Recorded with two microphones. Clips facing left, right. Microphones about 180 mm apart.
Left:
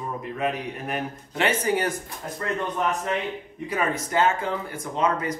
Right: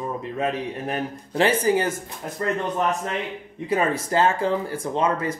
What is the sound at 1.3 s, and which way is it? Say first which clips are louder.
Speech: right 4 dB; 30° right (ahead or behind).